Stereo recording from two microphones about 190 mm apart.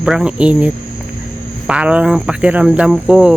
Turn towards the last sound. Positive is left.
turn(degrees=-5)  # may be behind; listen again after turning